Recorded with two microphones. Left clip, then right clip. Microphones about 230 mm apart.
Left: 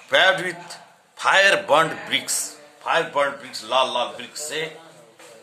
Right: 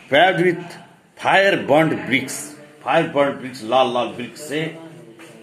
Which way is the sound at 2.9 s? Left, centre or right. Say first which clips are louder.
Right 3 dB; centre.